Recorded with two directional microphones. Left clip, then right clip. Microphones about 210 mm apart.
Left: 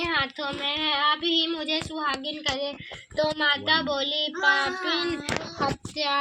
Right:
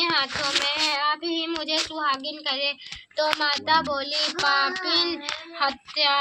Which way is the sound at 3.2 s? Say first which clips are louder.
Even; 35° left (ahead or behind).